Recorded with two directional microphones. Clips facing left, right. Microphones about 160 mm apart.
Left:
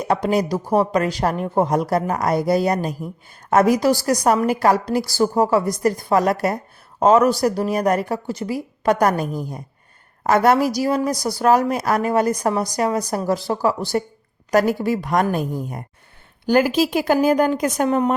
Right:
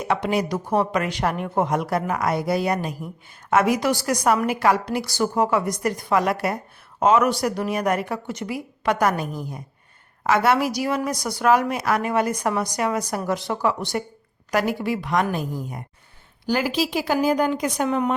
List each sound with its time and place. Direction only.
0.0 s a woman's voice: 40° left (ahead or behind)